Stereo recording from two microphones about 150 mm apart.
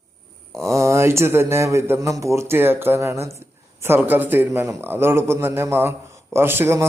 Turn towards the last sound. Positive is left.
turn(degrees=-15)  # may be behind; listen again after turning